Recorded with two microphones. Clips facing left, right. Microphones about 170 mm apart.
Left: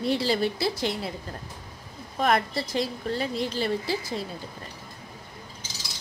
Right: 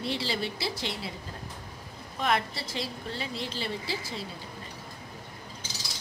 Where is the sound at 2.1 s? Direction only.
45° left (ahead or behind).